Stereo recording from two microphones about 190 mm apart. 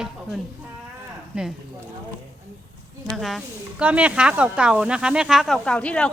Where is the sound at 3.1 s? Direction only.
Centre (ahead or behind).